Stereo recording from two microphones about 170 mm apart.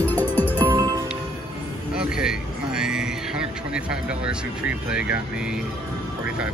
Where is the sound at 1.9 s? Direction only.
5° right (ahead or behind).